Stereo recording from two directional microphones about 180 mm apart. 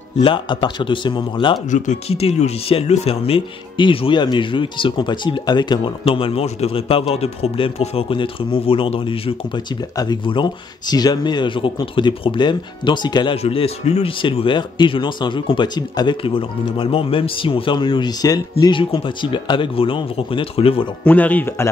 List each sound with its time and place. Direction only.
0.2 s speech: 25° left (ahead or behind)
1.7 s speech: 35° left (ahead or behind)
21.0 s speech: 10° left (ahead or behind)